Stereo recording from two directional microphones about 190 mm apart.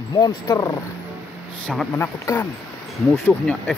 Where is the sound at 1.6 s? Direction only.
Centre (ahead or behind).